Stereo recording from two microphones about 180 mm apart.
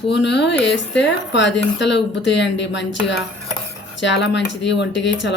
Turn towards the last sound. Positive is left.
turn(degrees=80)